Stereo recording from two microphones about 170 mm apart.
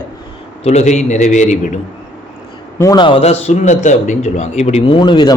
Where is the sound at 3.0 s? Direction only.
35° left (ahead or behind).